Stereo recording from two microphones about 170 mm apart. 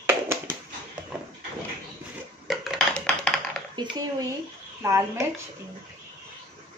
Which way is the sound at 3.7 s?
25° right (ahead or behind).